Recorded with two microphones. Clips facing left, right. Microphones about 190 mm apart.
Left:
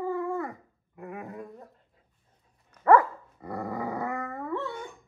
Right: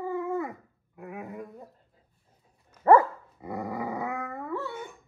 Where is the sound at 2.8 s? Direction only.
30° right (ahead or behind).